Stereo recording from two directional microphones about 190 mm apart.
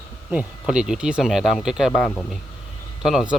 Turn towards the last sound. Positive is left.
turn(degrees=-5)  # may be behind; listen again after turning